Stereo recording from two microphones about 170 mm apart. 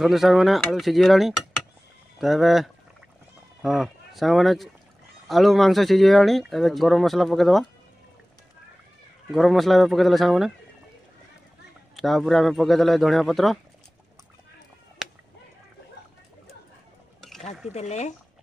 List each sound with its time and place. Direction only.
0.0 s speech: centre (ahead or behind)
9.3 s speech: centre (ahead or behind)
11.9 s speech: centre (ahead or behind)
17.7 s speech: 40° left (ahead or behind)